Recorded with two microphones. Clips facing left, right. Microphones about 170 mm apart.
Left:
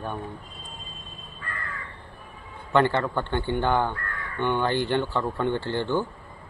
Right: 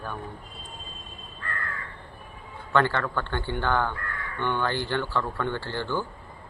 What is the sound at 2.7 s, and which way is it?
A man's voice, 20° left (ahead or behind).